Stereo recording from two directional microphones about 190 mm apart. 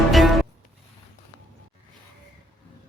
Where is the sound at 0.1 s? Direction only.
Centre (ahead or behind).